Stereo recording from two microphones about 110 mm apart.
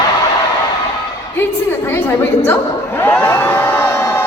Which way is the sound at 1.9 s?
20° left (ahead or behind).